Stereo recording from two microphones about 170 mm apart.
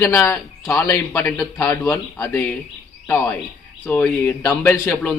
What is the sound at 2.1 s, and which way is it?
Speech, 20° left (ahead or behind).